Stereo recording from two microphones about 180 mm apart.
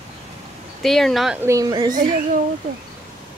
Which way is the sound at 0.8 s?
Centre (ahead or behind).